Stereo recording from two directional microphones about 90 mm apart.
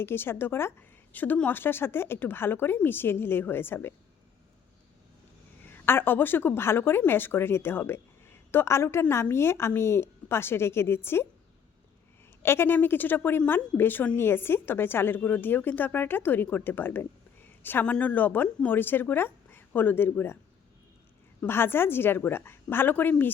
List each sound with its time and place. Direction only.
0.0 s a woman's voice: 25° left (ahead or behind)
5.6 s a woman's voice: 25° left (ahead or behind)
12.4 s a woman's voice: 25° left (ahead or behind)
21.4 s a woman's voice: 25° left (ahead or behind)